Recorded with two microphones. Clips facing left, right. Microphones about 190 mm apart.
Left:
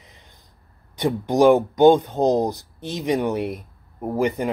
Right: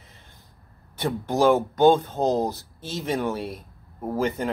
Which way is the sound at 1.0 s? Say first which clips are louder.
Left 5 dB; 15° left (ahead or behind).